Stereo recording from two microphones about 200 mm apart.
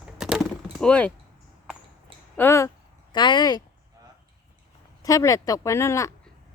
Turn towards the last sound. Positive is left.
turn(degrees=15)  # may be behind; listen again after turning